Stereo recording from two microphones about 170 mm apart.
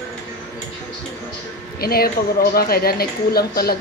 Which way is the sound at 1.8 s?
65° left (ahead or behind).